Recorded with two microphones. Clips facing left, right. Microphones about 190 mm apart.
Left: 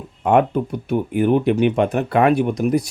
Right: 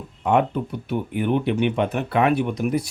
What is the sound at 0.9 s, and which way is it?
Speech, 45° left (ahead or behind).